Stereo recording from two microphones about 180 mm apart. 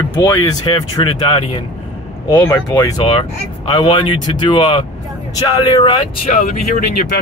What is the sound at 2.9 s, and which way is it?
Speech, 30° left (ahead or behind).